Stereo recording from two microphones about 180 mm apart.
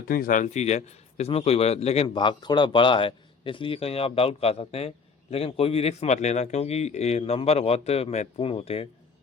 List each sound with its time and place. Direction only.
0.1 s a man's voice: 50° left (ahead or behind); by 8.9 s 35° left (ahead or behind)